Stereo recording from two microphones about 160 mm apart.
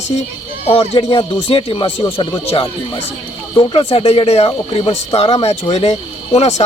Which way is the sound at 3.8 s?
40° left (ahead or behind).